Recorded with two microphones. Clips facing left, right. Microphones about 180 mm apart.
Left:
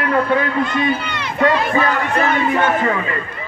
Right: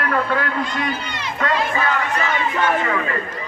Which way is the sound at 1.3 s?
30° left (ahead or behind).